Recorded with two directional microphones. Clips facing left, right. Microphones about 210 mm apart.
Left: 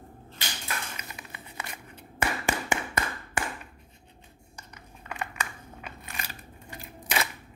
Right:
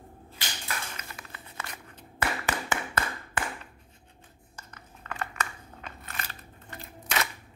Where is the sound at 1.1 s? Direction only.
15° left (ahead or behind).